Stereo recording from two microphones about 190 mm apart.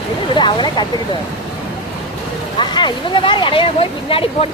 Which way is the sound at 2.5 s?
25° left (ahead or behind).